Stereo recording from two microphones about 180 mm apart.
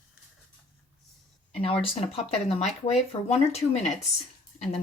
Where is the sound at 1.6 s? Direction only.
30° left (ahead or behind).